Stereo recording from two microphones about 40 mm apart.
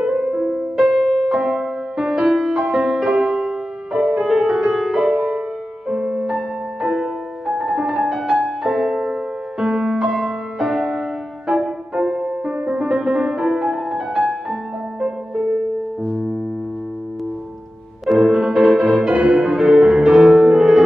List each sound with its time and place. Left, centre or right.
0.0 s music: centre
0.9 s music: centre
1.3 s music: centre
18.0 s music: centre
19.0 s music: right
19.4 s music: centre